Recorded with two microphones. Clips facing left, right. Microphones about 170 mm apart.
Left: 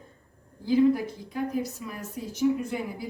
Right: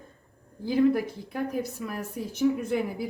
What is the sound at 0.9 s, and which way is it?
A woman's voice, 55° right (ahead or behind).